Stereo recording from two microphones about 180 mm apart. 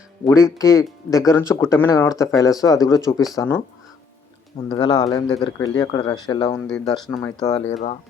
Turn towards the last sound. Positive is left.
turn(degrees=20)  # may be behind; listen again after turning